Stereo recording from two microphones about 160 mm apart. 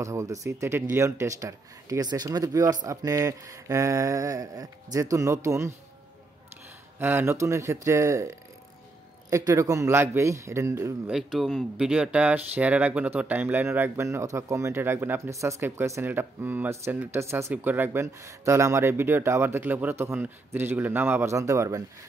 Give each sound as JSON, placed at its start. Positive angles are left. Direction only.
{"t": 0.0, "sound": "speech", "side_deg": -20}
{"t": 7.0, "sound": "speech", "side_deg": -15}
{"t": 11.1, "sound": "speech", "side_deg": -5}